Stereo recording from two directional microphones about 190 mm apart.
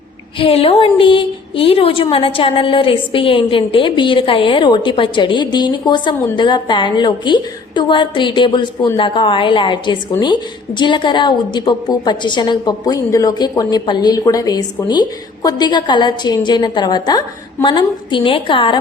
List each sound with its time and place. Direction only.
0.3 s a woman's voice: 30° left (ahead or behind)